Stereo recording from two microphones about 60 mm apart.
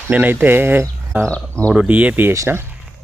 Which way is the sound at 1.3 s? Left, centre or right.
Left.